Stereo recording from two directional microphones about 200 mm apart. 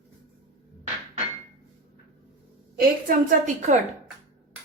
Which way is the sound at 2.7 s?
40° right (ahead or behind).